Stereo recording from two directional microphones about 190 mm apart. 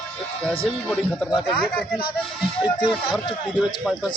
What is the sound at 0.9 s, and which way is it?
Speech, centre (ahead or behind).